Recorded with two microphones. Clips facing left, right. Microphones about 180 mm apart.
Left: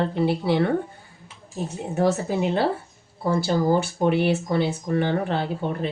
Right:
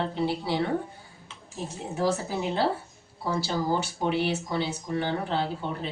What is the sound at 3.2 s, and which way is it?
Speech, 50° left (ahead or behind).